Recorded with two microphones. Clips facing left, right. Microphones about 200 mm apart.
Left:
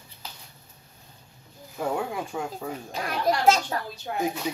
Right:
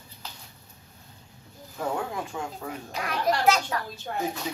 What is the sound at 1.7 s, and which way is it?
Speech, 10° left (ahead or behind).